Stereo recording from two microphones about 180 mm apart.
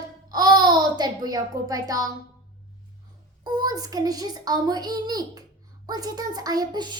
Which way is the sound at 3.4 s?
25° right (ahead or behind).